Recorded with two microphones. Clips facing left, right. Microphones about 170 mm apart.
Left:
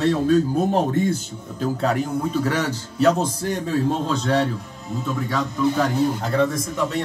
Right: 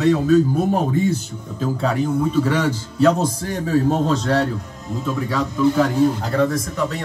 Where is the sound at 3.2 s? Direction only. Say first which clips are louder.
Right 1 dB; 5° right (ahead or behind).